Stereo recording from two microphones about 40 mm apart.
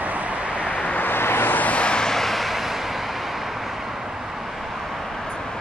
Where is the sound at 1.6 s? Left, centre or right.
Left.